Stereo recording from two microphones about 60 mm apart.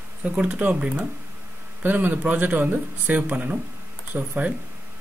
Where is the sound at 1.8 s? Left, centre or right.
Right.